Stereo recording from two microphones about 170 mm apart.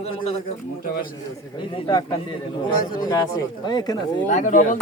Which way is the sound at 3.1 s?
25° left (ahead or behind).